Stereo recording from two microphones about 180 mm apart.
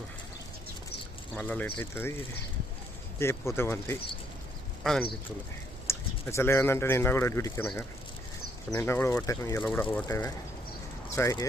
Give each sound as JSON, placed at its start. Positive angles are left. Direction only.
{"t": 1.4, "sound": "speech", "side_deg": 10}
{"t": 3.2, "sound": "speech", "side_deg": 15}
{"t": 4.8, "sound": "speech", "side_deg": 0}
{"t": 5.9, "sound": "speech", "side_deg": 15}
{"t": 8.7, "sound": "speech", "side_deg": 15}